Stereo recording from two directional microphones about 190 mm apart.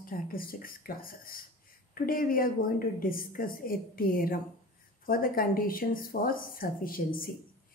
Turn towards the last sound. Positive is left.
turn(degrees=50)  # may be behind; listen again after turning